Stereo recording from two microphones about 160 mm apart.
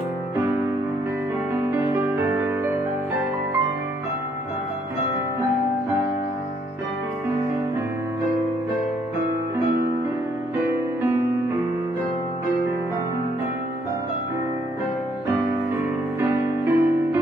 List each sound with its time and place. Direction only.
1.7 s music: 15° right (ahead or behind)
10.7 s music: 15° right (ahead or behind)
16.2 s music: 15° right (ahead or behind)